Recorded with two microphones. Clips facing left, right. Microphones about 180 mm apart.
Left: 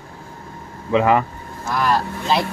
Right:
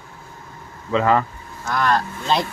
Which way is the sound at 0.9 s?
15° left (ahead or behind).